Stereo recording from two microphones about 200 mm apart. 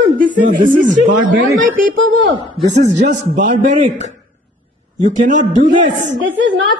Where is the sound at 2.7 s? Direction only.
35° right (ahead or behind).